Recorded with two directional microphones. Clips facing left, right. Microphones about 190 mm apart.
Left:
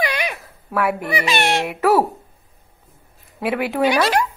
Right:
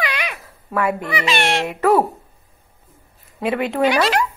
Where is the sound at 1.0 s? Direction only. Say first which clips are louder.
Even; 15° left (ahead or behind).